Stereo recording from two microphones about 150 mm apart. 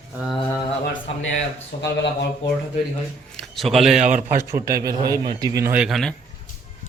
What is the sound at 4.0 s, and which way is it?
Speech, 55° right (ahead or behind).